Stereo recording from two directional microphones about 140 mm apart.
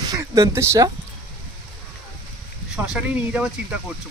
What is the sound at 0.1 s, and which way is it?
Speech, 25° right (ahead or behind).